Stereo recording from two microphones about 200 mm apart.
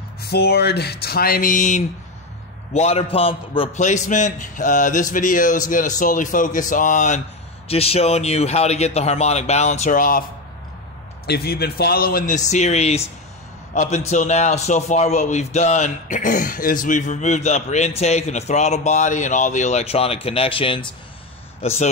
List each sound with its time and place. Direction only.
0.2 s a man's voice: 50° left (ahead or behind)
11.2 s a man's voice: 50° left (ahead or behind); by 20.9 s 25° left (ahead or behind)